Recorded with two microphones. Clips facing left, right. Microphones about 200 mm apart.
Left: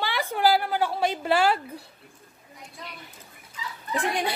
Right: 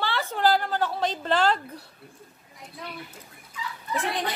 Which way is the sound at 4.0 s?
10° left (ahead or behind).